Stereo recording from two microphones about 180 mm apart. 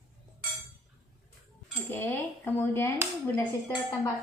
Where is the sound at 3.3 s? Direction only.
15° left (ahead or behind).